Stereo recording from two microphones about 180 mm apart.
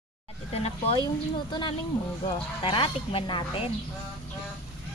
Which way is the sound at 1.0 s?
25° left (ahead or behind).